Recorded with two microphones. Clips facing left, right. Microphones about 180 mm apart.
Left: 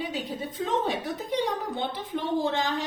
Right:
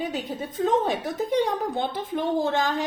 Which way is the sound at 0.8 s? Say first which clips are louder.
Right 4 dB; 45° right (ahead or behind).